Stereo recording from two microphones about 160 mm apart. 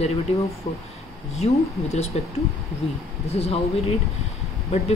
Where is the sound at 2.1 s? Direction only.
40° left (ahead or behind).